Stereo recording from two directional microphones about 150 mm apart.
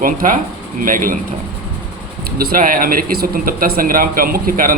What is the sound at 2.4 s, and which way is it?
Speech, 80° right.